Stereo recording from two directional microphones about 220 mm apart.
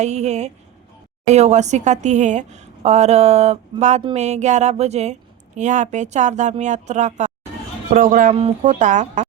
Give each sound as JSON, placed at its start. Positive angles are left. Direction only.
{"t": 0.0, "sound": "a woman's voice", "side_deg": -30}
{"t": 8.3, "sound": "a woman's voice", "side_deg": -25}